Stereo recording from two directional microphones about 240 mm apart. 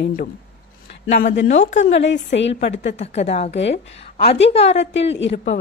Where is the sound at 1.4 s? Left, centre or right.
Left.